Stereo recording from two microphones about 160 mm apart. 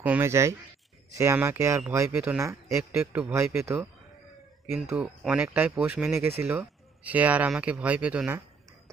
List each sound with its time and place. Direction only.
0.0 s speech: 10° right (ahead or behind)
4.8 s speech: 5° right (ahead or behind)